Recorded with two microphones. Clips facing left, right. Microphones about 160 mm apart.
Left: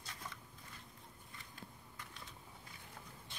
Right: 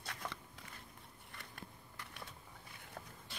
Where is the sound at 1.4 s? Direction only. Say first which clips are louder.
Right 2 dB; 70° right (ahead or behind).